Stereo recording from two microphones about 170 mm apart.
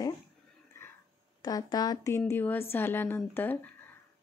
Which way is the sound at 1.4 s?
20° left (ahead or behind).